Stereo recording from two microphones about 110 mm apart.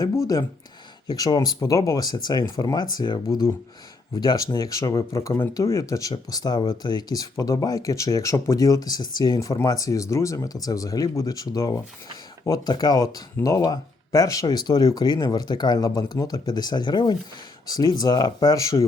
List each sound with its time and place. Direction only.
1.0 s speech: 35° left (ahead or behind)